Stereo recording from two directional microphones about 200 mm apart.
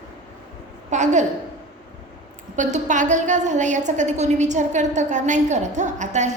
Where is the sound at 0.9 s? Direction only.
35° right (ahead or behind).